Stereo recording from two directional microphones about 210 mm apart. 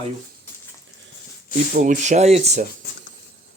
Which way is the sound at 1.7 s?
35° right (ahead or behind).